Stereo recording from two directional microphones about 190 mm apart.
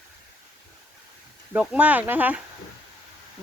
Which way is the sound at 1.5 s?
10° right (ahead or behind).